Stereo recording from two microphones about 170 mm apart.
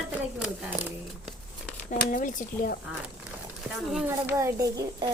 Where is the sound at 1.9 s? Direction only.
50° left (ahead or behind).